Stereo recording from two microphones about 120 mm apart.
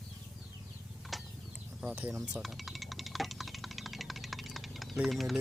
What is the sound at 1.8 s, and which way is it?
Speech, 10° right (ahead or behind).